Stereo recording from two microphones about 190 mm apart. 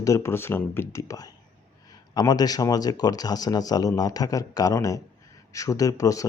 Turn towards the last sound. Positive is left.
turn(degrees=15)  # may be behind; listen again after turning